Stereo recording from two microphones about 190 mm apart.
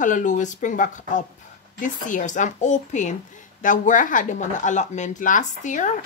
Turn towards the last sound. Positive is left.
turn(degrees=40)  # may be behind; listen again after turning